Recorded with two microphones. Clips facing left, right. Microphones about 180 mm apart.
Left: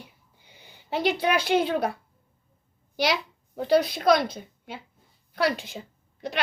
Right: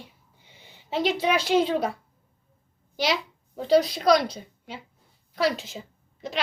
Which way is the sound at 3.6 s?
55° left (ahead or behind).